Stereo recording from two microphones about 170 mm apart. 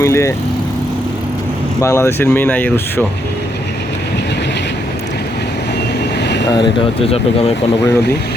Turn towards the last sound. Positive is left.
turn(degrees=35)  # may be behind; listen again after turning